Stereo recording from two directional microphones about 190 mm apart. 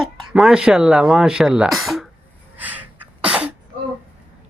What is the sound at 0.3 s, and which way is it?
A child's voice, 5° right (ahead or behind).